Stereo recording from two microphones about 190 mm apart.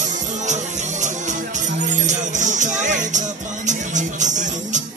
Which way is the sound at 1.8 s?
40° right (ahead or behind).